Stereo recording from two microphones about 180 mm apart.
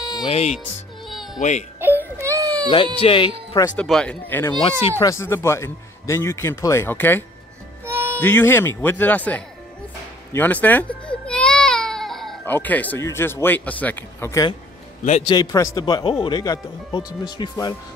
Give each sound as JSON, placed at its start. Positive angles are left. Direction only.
{"t": 0.2, "sound": "speech", "side_deg": 35}
{"t": 1.0, "sound": "music", "side_deg": 0}
{"t": 1.8, "sound": "music", "side_deg": -10}
{"t": 3.0, "sound": "speech", "side_deg": 30}
{"t": 3.7, "sound": "a man's voice", "side_deg": 5}
{"t": 7.8, "sound": "music", "side_deg": -15}
{"t": 8.2, "sound": "a man's voice", "side_deg": 10}
{"t": 10.3, "sound": "baby cry", "side_deg": 10}
{"t": 12.5, "sound": "a man's voice", "side_deg": 10}
{"t": 15.0, "sound": "speech", "side_deg": 35}
{"t": 15.3, "sound": "speech", "side_deg": 20}